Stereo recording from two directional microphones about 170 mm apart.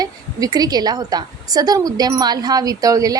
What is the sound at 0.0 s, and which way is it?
A woman's voice, 20° right (ahead or behind).